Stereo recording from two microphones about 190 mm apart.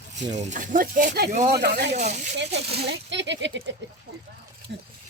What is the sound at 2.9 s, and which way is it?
Speech, 70° right (ahead or behind).